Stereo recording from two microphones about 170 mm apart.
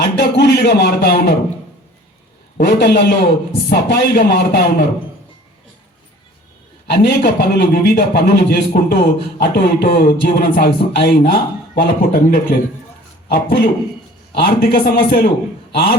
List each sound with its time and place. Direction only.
0.0 s a sound: 75° left (ahead or behind)
2.6 s a man's voice: 80° left
6.8 s a man's voice: 80° left